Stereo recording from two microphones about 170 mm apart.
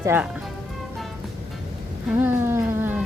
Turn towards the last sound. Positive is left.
turn(degrees=-10)  # may be behind; listen again after turning